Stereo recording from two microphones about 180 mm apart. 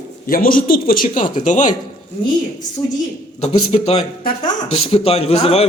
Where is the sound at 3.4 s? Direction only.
35° left (ahead or behind).